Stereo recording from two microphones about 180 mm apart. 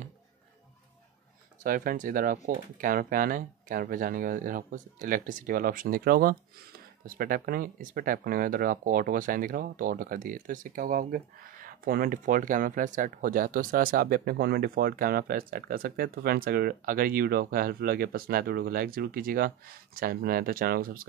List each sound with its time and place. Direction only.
1.6 s speech: 50° right (ahead or behind)